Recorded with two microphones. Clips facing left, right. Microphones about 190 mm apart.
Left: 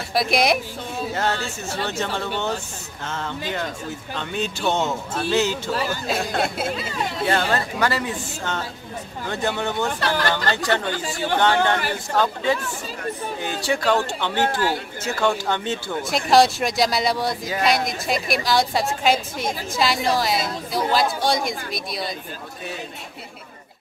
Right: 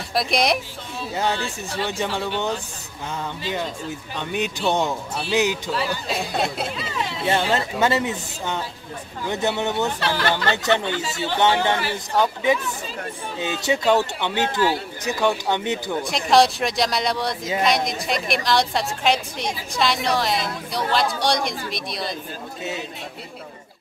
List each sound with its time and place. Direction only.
0.1 s speech: centre (ahead or behind)
1.1 s speech: 15° right (ahead or behind)
3.5 s speech: 15° right (ahead or behind)
6.0 s speech: centre (ahead or behind)
6.7 s speech: 45° left (ahead or behind)
7.2 s speech: 20° right (ahead or behind)
9.9 s speech: 45° left (ahead or behind)
10.5 s speech: 20° right (ahead or behind)
11.0 s speech: 45° left (ahead or behind)
11.3 s speech: 20° right (ahead or behind)
11.7 s speech: 50° left (ahead or behind)
13.4 s speech: 20° right (ahead or behind)
16.0 s speech: centre (ahead or behind)